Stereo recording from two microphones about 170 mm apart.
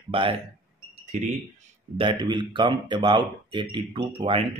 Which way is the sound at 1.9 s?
30° right (ahead or behind).